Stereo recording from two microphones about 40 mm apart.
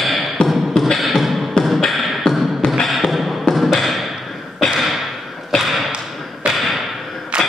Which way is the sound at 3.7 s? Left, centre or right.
Centre.